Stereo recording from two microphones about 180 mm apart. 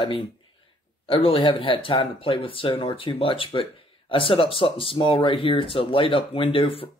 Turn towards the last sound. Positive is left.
turn(degrees=30)  # may be behind; listen again after turning